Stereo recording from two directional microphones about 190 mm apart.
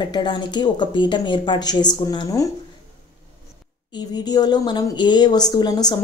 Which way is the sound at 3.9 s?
20° left (ahead or behind).